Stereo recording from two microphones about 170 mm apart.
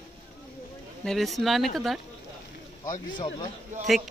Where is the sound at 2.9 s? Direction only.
25° left (ahead or behind).